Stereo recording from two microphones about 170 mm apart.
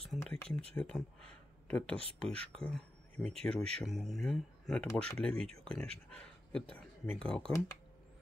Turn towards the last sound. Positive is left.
turn(degrees=5)  # may be behind; listen again after turning